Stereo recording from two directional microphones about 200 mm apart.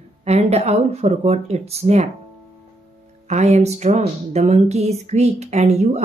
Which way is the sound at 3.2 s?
35° right (ahead or behind).